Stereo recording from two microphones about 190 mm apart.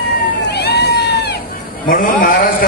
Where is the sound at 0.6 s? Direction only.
60° left (ahead or behind).